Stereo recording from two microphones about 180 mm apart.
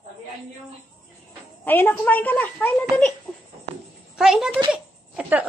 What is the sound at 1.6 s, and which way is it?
Speech, 10° left (ahead or behind).